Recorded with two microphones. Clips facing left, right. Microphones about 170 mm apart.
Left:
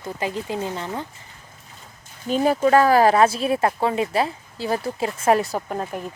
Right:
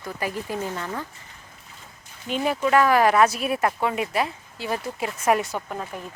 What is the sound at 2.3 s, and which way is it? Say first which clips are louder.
Speech: left 5 dB; 40° left (ahead or behind).